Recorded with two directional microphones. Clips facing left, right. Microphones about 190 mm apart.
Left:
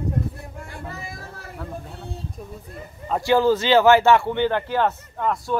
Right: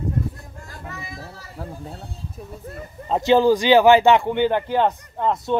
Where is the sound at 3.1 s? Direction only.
20° right (ahead or behind).